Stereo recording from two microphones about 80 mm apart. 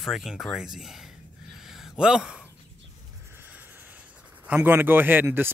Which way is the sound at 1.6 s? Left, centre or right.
Centre.